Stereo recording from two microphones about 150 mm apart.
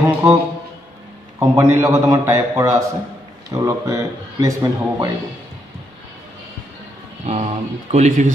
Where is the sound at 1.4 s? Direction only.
20° right (ahead or behind).